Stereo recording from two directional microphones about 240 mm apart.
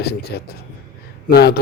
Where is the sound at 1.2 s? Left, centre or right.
Left.